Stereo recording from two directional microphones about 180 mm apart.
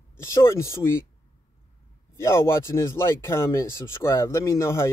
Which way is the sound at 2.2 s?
15° left (ahead or behind).